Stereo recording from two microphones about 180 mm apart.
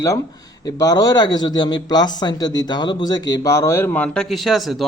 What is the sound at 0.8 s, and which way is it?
A man's voice, 20° left (ahead or behind).